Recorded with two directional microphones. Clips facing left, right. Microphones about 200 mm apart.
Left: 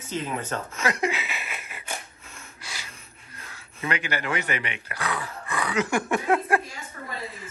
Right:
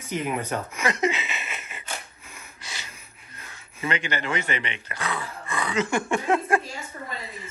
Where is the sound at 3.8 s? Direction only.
5° left (ahead or behind).